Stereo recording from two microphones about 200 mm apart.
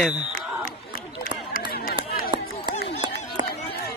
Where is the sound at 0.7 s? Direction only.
45° left (ahead or behind).